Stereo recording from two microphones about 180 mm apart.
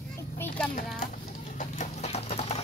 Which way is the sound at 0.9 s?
45° left (ahead or behind).